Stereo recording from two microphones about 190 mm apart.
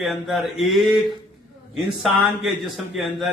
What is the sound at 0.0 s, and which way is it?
Speech, centre (ahead or behind).